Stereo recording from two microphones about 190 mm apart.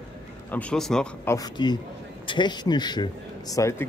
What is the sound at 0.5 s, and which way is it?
Speech, 5° left (ahead or behind).